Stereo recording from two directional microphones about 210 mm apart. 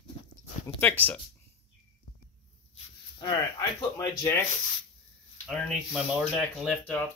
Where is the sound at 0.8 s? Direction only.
10° left (ahead or behind).